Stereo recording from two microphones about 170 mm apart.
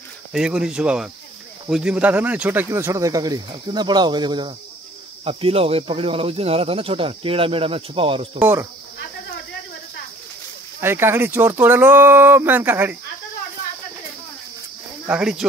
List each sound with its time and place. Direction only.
0.3 s speech: 5° right (ahead or behind); by 8.3 s 35° right (ahead or behind)
8.4 s speech: 10° right (ahead or behind)
10.8 s speech: 15° right (ahead or behind)
15.0 s speech: 5° right (ahead or behind)